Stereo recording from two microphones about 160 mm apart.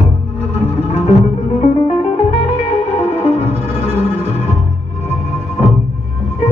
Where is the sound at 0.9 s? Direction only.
40° left (ahead or behind).